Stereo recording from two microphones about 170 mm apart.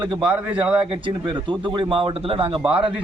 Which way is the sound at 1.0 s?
30° right (ahead or behind).